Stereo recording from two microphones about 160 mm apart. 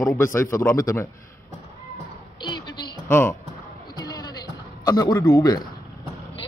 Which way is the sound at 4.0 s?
25° left (ahead or behind).